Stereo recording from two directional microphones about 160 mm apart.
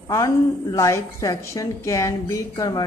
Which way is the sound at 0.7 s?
20° left (ahead or behind).